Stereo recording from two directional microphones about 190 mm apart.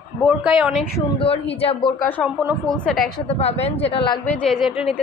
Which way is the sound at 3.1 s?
30° left (ahead or behind).